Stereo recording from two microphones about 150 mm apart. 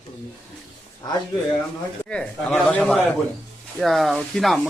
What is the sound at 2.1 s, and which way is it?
A man's voice, 5° left (ahead or behind).